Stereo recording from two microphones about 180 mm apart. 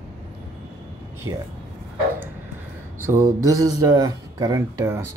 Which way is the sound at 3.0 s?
15° right (ahead or behind).